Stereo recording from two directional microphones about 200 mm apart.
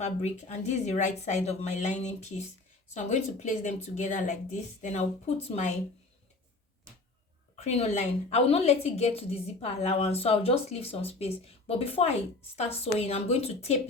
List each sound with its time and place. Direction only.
0.0 s a woman's voice: 35° left (ahead or behind)
7.5 s a woman's voice: 35° left (ahead or behind)